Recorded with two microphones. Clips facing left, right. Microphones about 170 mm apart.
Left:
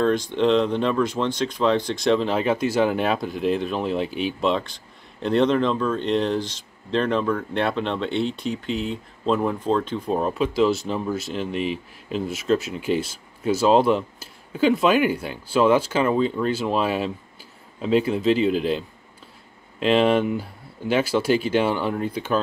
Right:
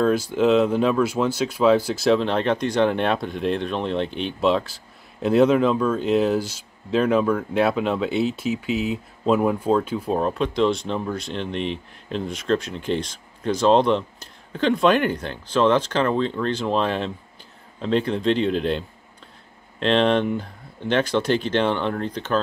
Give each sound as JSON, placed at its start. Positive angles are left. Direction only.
{"t": 0.0, "sound": "speech", "side_deg": -5}